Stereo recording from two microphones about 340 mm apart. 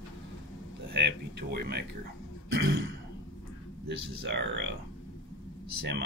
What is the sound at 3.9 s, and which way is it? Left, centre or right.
Speech, right.